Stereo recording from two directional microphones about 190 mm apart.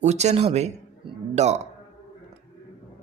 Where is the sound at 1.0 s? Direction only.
25° right (ahead or behind).